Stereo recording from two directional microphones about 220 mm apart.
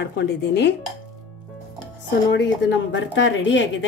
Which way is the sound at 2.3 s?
55° left (ahead or behind).